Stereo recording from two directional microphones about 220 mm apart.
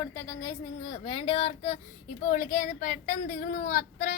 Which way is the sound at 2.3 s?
35° left (ahead or behind).